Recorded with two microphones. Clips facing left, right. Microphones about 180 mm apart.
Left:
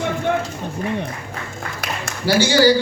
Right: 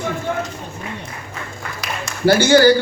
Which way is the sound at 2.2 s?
55° right (ahead or behind).